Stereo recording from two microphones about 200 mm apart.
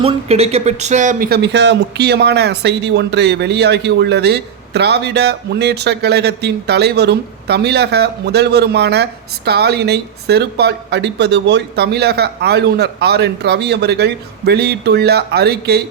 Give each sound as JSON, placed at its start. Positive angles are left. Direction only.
{"t": 0.0, "sound": "speech", "side_deg": -30}